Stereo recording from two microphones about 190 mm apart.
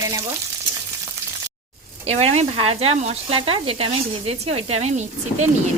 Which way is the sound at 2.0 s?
35° right (ahead or behind).